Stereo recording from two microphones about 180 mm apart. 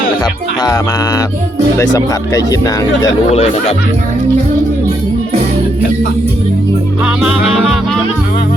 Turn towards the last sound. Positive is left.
turn(degrees=0)  # may be behind; listen again after turning